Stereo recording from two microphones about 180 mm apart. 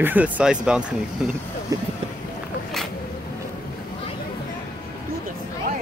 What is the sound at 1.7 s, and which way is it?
Speech, 20° right (ahead or behind).